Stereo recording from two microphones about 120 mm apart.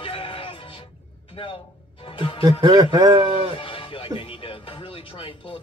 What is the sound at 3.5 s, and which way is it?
Music, 45° left (ahead or behind).